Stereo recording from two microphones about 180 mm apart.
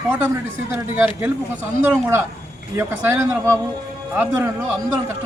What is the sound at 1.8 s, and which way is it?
A man's voice, 10° right (ahead or behind).